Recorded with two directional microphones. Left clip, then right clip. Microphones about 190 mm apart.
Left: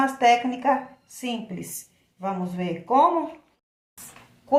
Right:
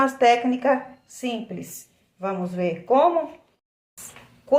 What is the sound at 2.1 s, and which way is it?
Speech, 20° right (ahead or behind).